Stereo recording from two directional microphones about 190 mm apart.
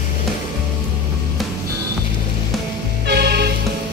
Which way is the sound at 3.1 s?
60° right (ahead or behind).